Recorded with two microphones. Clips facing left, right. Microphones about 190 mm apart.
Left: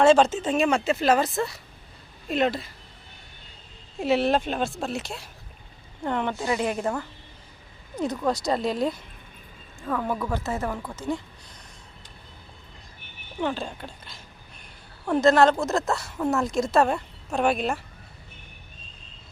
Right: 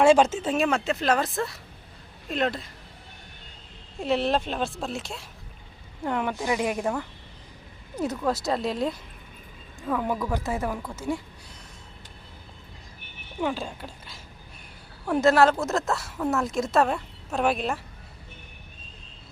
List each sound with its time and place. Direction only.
0.0 s speech: 10° right (ahead or behind)
4.0 s speech: 5° left (ahead or behind)
13.4 s speech: 5° right (ahead or behind)